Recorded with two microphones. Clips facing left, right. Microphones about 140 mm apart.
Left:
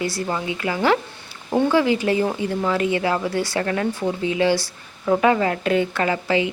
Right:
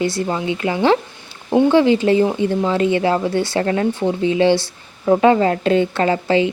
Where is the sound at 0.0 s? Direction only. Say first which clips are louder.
Right 5 dB; 25° right (ahead or behind).